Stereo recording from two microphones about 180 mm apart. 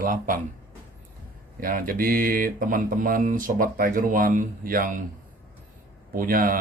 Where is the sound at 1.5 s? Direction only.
50° right (ahead or behind).